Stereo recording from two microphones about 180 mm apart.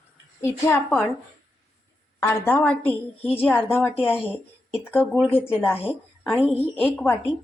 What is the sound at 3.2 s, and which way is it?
Speech, 35° left (ahead or behind).